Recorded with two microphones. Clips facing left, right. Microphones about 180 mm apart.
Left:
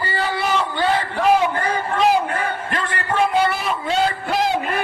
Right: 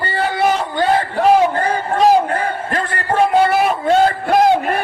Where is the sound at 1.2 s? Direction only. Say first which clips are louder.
Right 4 dB; 40° right (ahead or behind).